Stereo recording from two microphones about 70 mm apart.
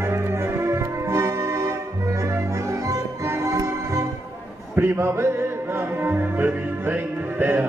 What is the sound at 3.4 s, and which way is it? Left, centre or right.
Music, right.